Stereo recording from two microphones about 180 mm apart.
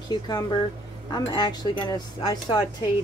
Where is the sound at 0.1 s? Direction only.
25° left (ahead or behind).